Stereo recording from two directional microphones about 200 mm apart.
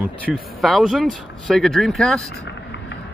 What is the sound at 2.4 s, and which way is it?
Vehicle, 60° left (ahead or behind).